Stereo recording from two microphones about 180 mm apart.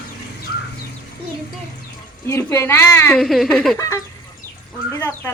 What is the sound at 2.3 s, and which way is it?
Speech, 15° left (ahead or behind).